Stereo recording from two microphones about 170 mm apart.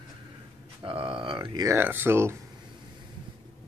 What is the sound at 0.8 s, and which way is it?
Speech, 30° right (ahead or behind).